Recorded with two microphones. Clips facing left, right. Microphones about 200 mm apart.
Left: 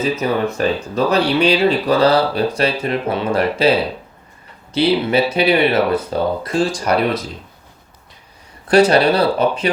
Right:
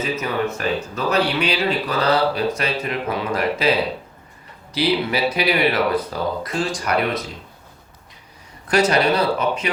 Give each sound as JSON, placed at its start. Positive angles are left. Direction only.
{"t": 0.0, "sound": "speech", "side_deg": 30}
{"t": 8.6, "sound": "speech", "side_deg": 30}